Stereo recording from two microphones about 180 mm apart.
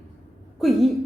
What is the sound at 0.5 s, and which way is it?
Speech, centre (ahead or behind).